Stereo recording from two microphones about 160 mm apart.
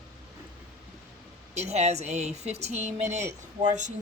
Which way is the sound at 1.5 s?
45° right (ahead or behind).